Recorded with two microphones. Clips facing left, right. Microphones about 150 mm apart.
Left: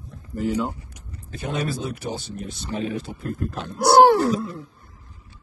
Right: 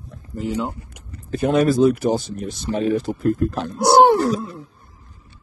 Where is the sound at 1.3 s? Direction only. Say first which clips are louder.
Right 11 dB; 55° right (ahead or behind).